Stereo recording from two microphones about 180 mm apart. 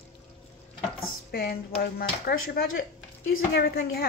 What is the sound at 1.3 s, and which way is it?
Speech, 60° left (ahead or behind).